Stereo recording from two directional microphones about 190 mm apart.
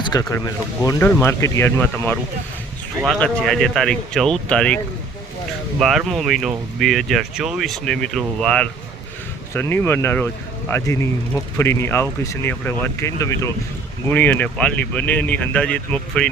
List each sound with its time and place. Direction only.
0.1 s speech: 20° left (ahead or behind)
5.8 s speech: centre (ahead or behind)